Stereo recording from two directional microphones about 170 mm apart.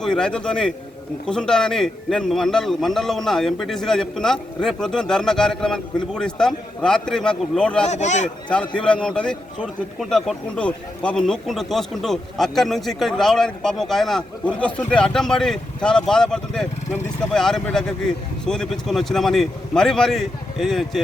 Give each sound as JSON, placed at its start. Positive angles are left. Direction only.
{"t": 0.0, "sound": "speech", "side_deg": 5}
{"t": 7.9, "sound": "a man's voice", "side_deg": 45}
{"t": 8.7, "sound": "speech", "side_deg": 5}